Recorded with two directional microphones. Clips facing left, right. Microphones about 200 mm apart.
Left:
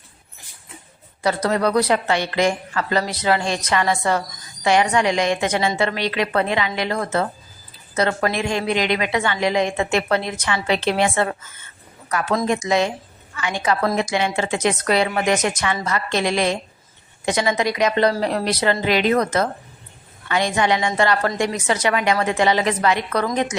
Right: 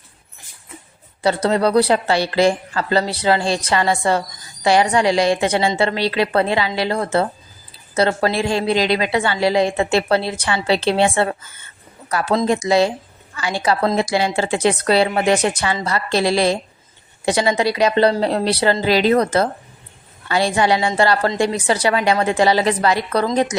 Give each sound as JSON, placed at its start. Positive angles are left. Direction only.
{"t": 1.2, "sound": "a woman's voice", "side_deg": -30}